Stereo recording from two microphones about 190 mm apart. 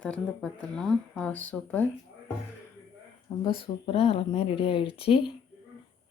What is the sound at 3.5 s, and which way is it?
Speech, 30° left (ahead or behind).